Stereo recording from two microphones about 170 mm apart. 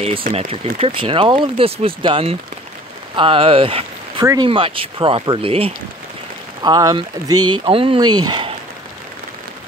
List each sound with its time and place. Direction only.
0.3 s speech: 35° right (ahead or behind)